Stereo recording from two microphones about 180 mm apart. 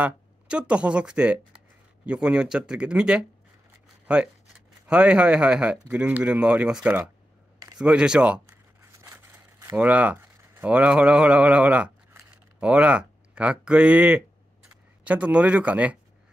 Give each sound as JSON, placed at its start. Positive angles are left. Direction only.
{"t": 0.0, "sound": "speech", "side_deg": -5}
{"t": 9.0, "sound": "a sound", "side_deg": -20}
{"t": 9.8, "sound": "speech", "side_deg": -10}